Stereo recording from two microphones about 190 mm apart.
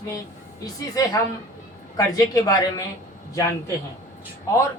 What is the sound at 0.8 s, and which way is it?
Speech, 20° left (ahead or behind).